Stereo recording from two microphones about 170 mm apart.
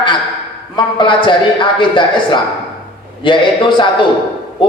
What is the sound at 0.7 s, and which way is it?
A man's voice, 30° left (ahead or behind).